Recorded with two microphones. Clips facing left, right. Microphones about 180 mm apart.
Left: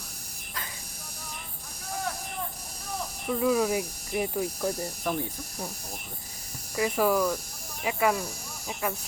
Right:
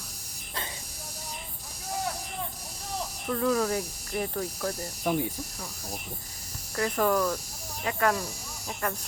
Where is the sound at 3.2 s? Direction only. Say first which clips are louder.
Left 2 dB; 10° left (ahead or behind).